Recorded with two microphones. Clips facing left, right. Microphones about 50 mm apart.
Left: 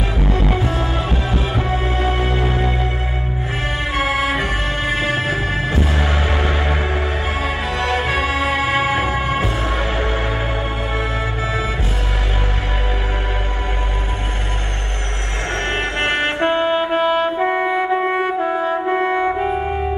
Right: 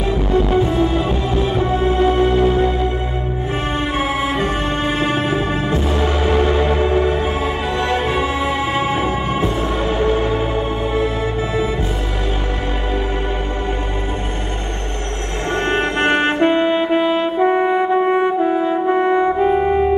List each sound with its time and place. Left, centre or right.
0.7 s music: left
3.9 s music: left
16.3 s brass instrument: left
17.4 s music: left
18.9 s brass instrument: left